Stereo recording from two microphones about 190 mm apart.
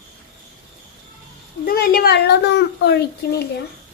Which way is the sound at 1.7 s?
50° left (ahead or behind).